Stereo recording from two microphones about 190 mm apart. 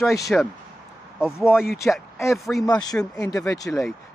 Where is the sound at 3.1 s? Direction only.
15° left (ahead or behind).